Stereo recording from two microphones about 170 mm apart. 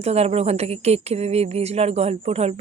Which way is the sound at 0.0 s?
40° right (ahead or behind).